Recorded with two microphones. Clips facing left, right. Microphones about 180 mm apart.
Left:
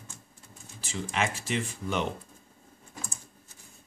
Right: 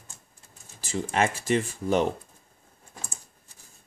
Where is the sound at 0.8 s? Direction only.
45° right (ahead or behind).